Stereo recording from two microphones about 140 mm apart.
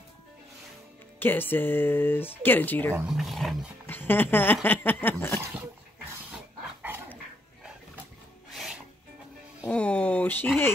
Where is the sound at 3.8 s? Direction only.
15° left (ahead or behind).